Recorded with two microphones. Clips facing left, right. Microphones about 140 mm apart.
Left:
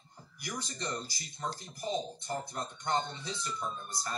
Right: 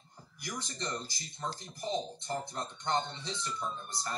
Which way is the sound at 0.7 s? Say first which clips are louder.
Even; 10° left (ahead or behind).